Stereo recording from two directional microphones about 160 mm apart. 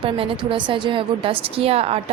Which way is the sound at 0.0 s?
35° right (ahead or behind).